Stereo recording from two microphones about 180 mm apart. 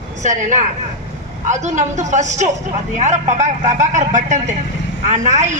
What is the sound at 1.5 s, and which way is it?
A woman's voice, 40° right (ahead or behind).